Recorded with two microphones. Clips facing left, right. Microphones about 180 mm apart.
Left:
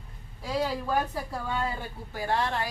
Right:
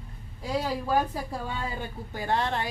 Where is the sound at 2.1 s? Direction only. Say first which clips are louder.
Even; 20° right (ahead or behind).